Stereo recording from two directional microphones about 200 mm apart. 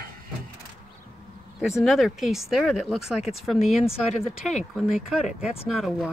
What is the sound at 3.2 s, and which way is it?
Speech, 30° left (ahead or behind).